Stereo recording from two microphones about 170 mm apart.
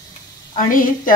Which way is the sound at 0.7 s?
55° left (ahead or behind).